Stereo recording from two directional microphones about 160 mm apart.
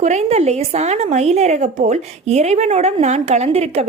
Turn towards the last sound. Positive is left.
turn(degrees=-40)  # may be behind; listen again after turning